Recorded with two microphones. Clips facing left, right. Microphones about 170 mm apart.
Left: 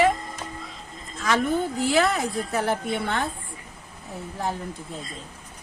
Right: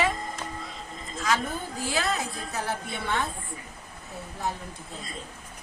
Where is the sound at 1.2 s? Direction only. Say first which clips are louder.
Left 6 dB; 60° left (ahead or behind).